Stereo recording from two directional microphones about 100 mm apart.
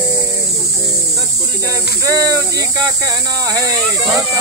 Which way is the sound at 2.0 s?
35° right (ahead or behind).